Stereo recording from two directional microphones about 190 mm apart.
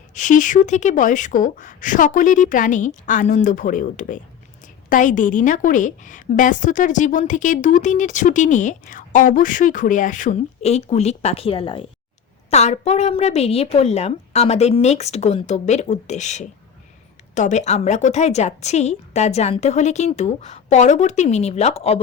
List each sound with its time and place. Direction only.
0.1 s a woman's voice: 40° left (ahead or behind)